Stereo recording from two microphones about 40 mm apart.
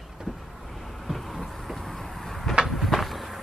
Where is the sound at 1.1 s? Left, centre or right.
Centre.